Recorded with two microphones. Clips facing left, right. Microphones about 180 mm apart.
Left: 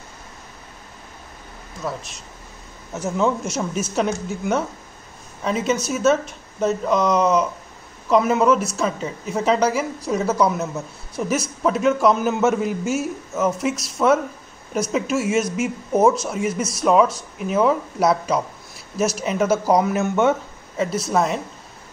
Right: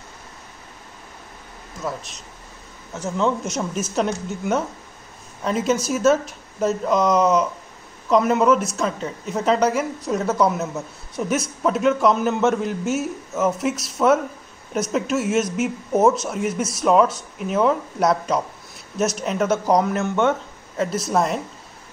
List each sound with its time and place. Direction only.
1.8 s a man's voice: centre (ahead or behind)